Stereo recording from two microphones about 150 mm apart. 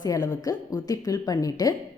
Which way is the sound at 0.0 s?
25° left (ahead or behind).